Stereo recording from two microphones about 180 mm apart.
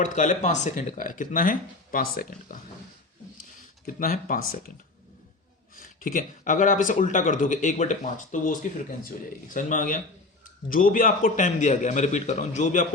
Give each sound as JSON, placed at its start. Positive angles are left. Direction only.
{"t": 0.0, "sound": "speech", "side_deg": 45}
{"t": 3.8, "sound": "speech", "side_deg": 50}
{"t": 5.7, "sound": "speech", "side_deg": 50}